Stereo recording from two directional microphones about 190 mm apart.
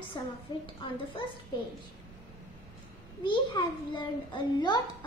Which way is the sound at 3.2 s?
25° left (ahead or behind).